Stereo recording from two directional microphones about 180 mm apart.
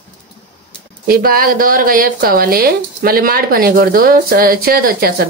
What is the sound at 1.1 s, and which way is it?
Speech, 55° right (ahead or behind).